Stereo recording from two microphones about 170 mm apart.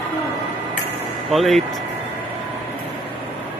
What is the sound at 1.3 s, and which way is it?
Speech, centre (ahead or behind).